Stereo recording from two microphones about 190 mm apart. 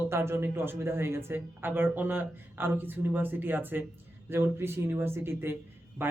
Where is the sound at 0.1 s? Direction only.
15° right (ahead or behind).